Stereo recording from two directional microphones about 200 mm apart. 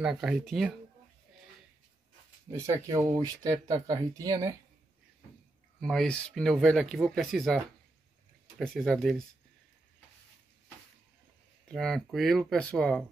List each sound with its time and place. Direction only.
0.0 s speech: 5° right (ahead or behind)
2.5 s speech: 15° right (ahead or behind)
5.8 s speech: centre (ahead or behind)
11.7 s speech: centre (ahead or behind)